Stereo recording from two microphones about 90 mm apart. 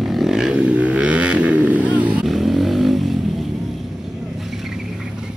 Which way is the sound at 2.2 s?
Centre (ahead or behind).